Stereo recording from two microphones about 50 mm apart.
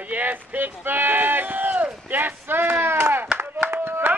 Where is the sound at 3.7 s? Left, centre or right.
Right.